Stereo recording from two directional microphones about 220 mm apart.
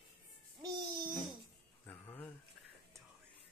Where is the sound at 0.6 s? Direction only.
20° right (ahead or behind).